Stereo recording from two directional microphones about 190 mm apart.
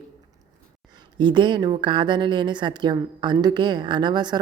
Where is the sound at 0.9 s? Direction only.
25° right (ahead or behind).